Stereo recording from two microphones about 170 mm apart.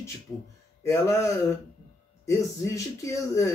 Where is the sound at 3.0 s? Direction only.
20° left (ahead or behind).